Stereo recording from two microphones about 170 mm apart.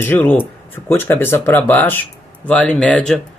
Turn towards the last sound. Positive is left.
turn(degrees=5)  # may be behind; listen again after turning